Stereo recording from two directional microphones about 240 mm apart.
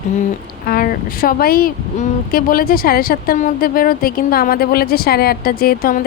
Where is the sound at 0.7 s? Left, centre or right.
Left.